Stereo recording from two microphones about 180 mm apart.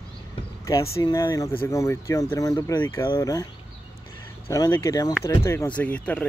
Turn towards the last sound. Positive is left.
turn(degrees=10)  # may be behind; listen again after turning